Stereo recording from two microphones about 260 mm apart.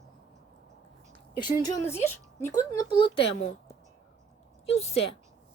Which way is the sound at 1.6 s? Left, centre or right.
Centre.